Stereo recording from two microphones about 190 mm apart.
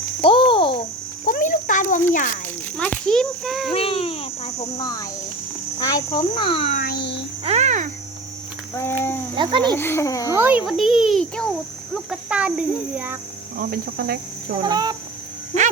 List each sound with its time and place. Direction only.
0.2 s a sound: 25° left (ahead or behind)
1.2 s a sound: 45° left (ahead or behind)
2.7 s a child's voice: 5° left (ahead or behind)
3.7 s speech: 30° left (ahead or behind)
4.8 s speech: 20° left (ahead or behind)
6.8 s a sound: 60° left (ahead or behind)
7.4 s a child's voice: 35° right (ahead or behind)
8.7 s a child's voice: 10° left (ahead or behind)
9.3 s speech: 25° right (ahead or behind)
9.7 s a child's voice: 10° left (ahead or behind)
10.3 s a child's voice: 10° right (ahead or behind)
13.6 s speech: 50° right (ahead or behind)
14.6 s speech: 20° right (ahead or behind)